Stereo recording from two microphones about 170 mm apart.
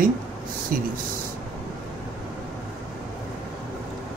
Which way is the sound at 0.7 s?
55° right (ahead or behind).